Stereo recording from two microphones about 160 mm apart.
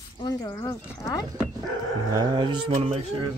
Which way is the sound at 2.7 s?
40° right (ahead or behind).